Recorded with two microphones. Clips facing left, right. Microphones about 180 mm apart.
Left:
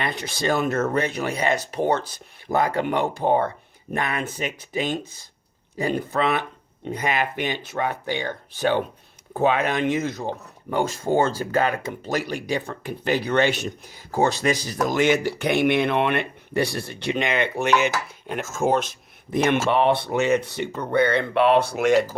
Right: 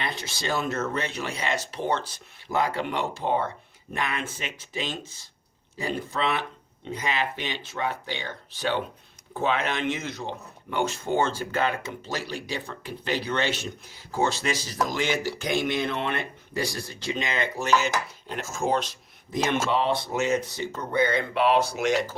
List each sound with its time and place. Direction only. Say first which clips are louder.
0.0 s speech: left 6 dB; 55° left (ahead or behind)